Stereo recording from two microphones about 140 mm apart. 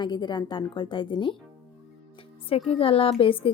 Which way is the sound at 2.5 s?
45° left (ahead or behind).